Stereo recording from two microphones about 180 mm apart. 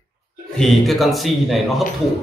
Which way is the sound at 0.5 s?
Centre (ahead or behind).